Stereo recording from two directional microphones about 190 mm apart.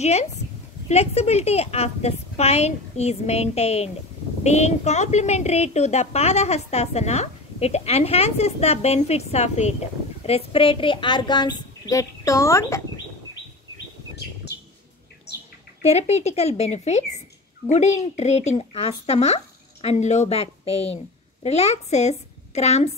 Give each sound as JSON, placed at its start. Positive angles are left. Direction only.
{"t": 0.0, "sound": "a woman's voice", "side_deg": 35}
{"t": 15.8, "sound": "a woman's voice", "side_deg": 35}